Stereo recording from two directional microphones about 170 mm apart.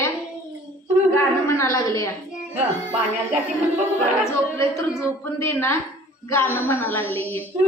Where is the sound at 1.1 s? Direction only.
15° left (ahead or behind).